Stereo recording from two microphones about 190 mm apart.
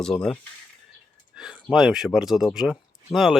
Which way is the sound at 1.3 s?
5° right (ahead or behind).